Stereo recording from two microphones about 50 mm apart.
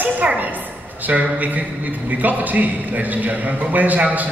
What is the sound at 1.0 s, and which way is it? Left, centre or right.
A man's voice, right.